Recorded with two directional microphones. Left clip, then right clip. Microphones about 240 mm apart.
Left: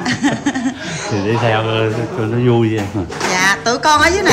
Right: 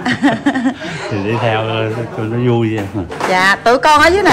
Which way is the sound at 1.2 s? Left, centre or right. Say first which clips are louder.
Even; centre.